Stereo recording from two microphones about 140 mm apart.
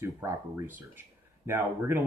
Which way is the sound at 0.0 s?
20° right (ahead or behind).